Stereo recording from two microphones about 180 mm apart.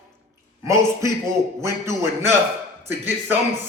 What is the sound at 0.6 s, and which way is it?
Speech, 15° right (ahead or behind).